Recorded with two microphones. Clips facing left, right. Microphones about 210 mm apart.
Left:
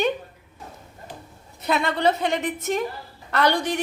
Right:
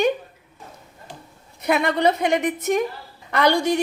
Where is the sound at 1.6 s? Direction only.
15° right (ahead or behind).